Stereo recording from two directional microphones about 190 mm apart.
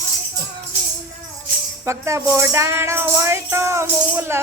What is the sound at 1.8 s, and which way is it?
Music, 15° right (ahead or behind).